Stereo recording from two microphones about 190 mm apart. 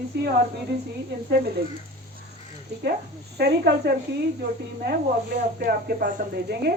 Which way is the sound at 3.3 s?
60° right (ahead or behind).